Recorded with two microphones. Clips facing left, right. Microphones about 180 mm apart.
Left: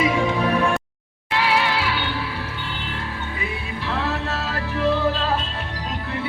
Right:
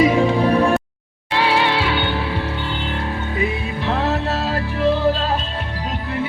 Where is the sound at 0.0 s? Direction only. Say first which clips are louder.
Right 5 dB; 35° right (ahead or behind).